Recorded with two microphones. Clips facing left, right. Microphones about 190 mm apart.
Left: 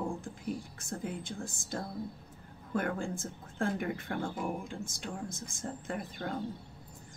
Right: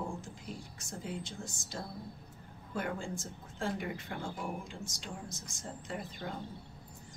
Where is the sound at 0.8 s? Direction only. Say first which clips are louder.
Left 3 dB; 55° left (ahead or behind).